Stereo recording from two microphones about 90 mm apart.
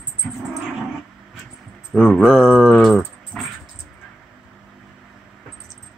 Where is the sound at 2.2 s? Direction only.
5° right (ahead or behind).